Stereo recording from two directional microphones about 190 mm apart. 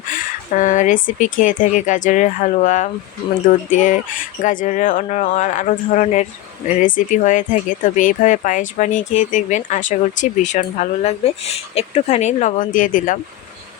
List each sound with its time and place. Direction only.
0.1 s speech: 45° left (ahead or behind)